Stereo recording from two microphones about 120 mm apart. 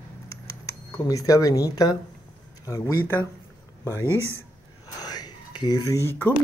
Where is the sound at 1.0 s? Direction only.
30° left (ahead or behind).